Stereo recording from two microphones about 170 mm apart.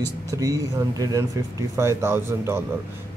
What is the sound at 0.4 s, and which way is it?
Speech, 20° right (ahead or behind).